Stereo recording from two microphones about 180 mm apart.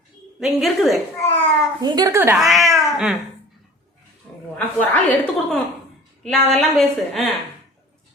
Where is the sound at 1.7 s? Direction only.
20° right (ahead or behind).